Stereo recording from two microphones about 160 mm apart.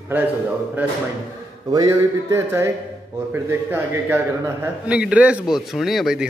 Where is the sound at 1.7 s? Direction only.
20° right (ahead or behind).